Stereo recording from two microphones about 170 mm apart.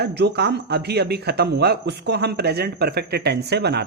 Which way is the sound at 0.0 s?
75° right (ahead or behind).